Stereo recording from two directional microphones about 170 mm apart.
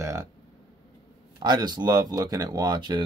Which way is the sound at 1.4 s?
25° right (ahead or behind).